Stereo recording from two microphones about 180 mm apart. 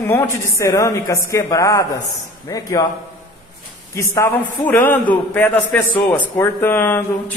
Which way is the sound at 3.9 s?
15° left (ahead or behind).